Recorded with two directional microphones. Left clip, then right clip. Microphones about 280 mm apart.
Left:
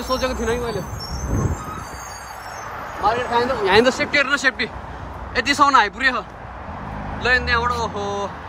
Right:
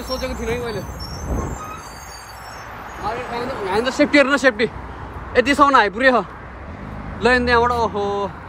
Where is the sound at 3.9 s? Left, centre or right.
Centre.